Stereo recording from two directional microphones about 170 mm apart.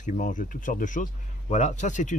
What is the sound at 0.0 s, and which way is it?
Speech, 50° left (ahead or behind).